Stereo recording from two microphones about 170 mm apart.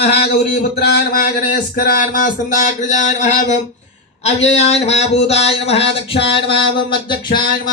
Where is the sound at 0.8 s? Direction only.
60° left (ahead or behind); by 7.4 s 30° left (ahead or behind).